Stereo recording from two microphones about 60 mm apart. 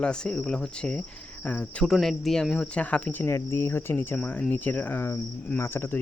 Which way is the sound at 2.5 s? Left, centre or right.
Centre.